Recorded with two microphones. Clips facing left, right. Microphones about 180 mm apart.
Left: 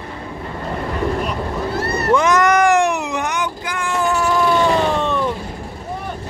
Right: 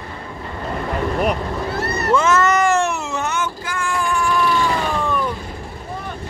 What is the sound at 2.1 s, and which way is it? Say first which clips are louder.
Cat: left 2 dB; 15° left (ahead or behind).